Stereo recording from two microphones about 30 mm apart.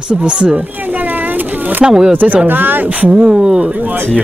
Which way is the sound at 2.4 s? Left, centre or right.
Right.